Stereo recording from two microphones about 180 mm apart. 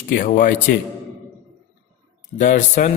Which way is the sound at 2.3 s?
45° left (ahead or behind).